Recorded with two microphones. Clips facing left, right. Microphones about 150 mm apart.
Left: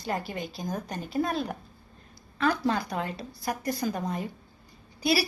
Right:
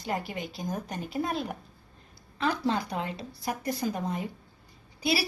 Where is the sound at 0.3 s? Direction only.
20° right (ahead or behind).